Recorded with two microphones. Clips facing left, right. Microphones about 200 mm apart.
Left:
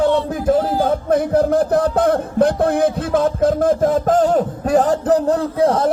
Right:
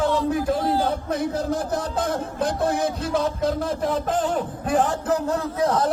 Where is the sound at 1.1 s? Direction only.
55° left (ahead or behind).